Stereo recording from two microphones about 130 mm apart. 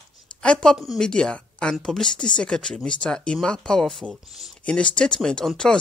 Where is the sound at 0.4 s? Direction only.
5° left (ahead or behind).